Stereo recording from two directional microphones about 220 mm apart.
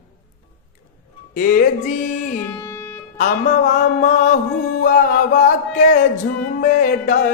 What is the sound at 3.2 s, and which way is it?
A man's voice, 35° left (ahead or behind).